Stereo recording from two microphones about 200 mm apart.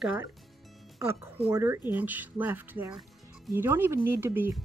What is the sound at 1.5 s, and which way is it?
A woman's voice, 10° right (ahead or behind).